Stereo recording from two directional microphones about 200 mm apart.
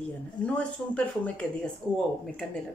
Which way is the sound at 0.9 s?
5° left (ahead or behind).